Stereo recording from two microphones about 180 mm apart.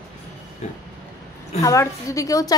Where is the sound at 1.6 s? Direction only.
15° left (ahead or behind).